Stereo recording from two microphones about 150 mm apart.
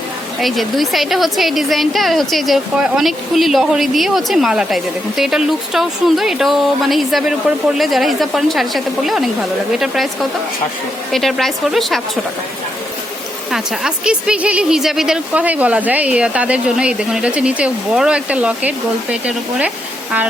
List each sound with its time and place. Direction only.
0.4 s a woman's voice: centre (ahead or behind)
13.5 s speech: 5° right (ahead or behind)